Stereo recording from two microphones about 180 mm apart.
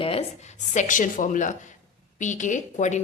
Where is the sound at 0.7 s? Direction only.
45° left (ahead or behind).